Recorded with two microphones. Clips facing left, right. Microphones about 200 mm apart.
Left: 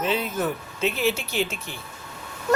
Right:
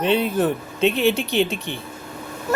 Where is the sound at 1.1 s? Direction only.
35° right (ahead or behind).